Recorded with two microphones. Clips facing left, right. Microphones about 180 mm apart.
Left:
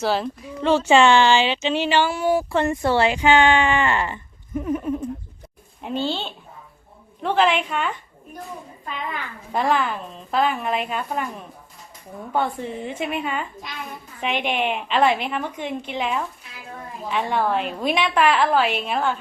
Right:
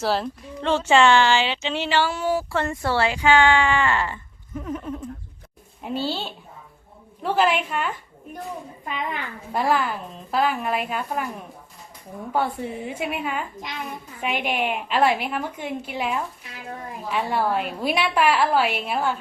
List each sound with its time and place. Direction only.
0.0 s speech: centre (ahead or behind)
5.8 s a woman's voice: 5° right (ahead or behind)
9.5 s a woman's voice: 5° right (ahead or behind)
12.3 s a woman's voice: 10° right (ahead or behind)